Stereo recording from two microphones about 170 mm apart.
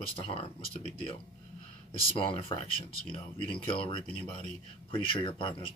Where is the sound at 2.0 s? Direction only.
30° left (ahead or behind).